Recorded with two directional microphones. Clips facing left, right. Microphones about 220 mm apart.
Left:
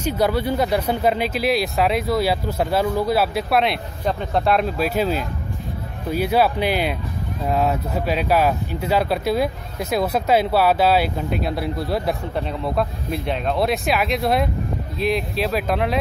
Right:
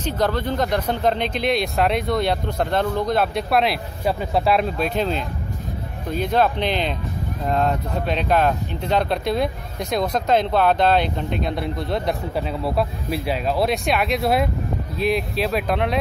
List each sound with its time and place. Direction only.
0.0 s speech: 10° left (ahead or behind)